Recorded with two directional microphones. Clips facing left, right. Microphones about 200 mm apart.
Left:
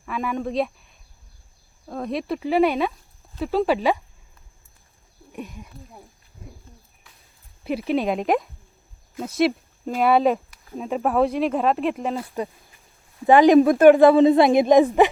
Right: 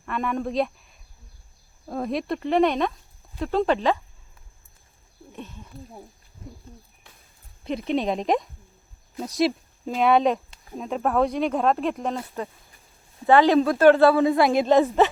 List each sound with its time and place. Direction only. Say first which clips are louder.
0.0 s a woman's voice: even; centre (ahead or behind)
5.3 s speech: left 4 dB; 10° left (ahead or behind)
7.6 s speech: left 2 dB; 5° left (ahead or behind)
13.2 s a woman's voice: left 4 dB; 15° left (ahead or behind)